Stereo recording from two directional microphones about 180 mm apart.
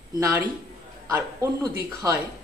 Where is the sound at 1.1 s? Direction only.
15° right (ahead or behind).